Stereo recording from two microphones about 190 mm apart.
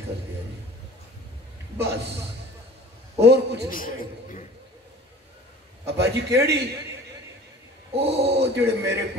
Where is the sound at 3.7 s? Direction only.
45° left (ahead or behind).